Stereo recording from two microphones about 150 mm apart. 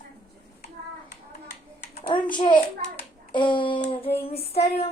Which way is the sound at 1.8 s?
50° left (ahead or behind).